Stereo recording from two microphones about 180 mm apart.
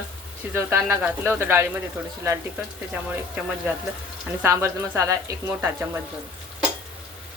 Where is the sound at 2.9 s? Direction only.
10° right (ahead or behind).